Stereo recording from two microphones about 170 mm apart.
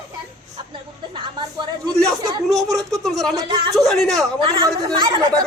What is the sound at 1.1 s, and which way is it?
Speech, 30° right (ahead or behind).